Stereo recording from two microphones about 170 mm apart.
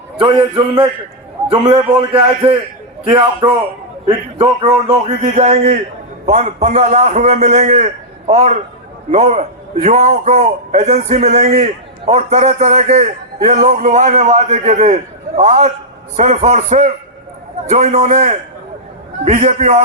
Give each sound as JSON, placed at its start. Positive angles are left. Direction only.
{"t": 0.2, "sound": "a man's voice", "side_deg": -30}